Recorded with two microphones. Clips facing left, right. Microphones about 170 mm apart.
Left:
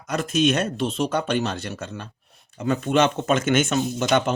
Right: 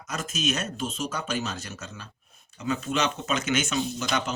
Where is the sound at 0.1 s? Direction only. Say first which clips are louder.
Left 9 dB; 60° left (ahead or behind).